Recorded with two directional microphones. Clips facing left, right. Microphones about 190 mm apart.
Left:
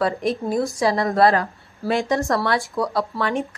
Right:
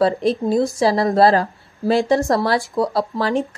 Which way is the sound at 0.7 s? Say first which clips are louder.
Right 1 dB; 30° right (ahead or behind).